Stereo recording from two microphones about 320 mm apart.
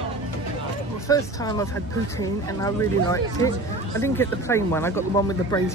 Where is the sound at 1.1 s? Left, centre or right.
Centre.